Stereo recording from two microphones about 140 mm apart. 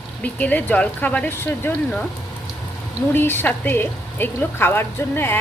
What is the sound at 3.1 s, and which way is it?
A woman's voice, 15° left (ahead or behind).